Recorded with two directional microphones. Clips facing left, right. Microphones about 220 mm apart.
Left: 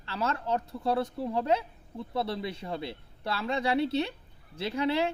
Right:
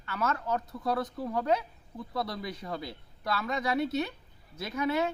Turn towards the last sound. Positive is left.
turn(degrees=30)  # may be behind; listen again after turning